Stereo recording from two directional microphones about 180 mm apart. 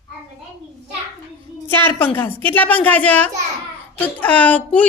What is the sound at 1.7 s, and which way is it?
A woman's voice, 10° left (ahead or behind).